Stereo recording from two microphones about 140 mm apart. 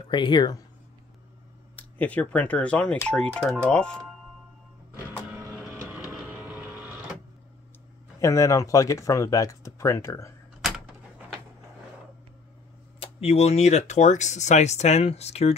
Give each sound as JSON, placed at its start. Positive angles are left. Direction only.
{"t": 0.1, "sound": "speech", "side_deg": 35}
{"t": 1.8, "sound": "speech", "side_deg": 10}
{"t": 6.2, "sound": "vehicle", "side_deg": -10}
{"t": 8.2, "sound": "speech", "side_deg": 20}
{"t": 10.6, "sound": "a sound", "side_deg": -5}
{"t": 13.0, "sound": "speech", "side_deg": 45}